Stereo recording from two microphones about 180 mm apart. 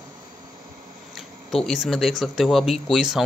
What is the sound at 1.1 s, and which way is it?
Speech, centre (ahead or behind).